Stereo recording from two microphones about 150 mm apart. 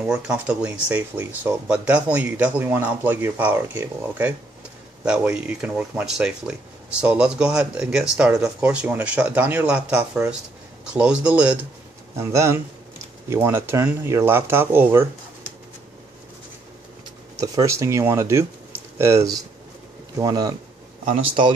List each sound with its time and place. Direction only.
0.0 s speech: 5° right (ahead or behind)
17.4 s speech: 20° right (ahead or behind)
21.1 s speech: 35° right (ahead or behind)